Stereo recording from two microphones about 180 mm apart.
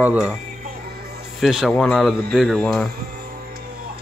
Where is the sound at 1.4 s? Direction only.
Centre (ahead or behind).